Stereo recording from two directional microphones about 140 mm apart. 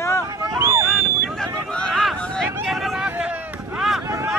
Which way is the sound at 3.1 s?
10° right (ahead or behind).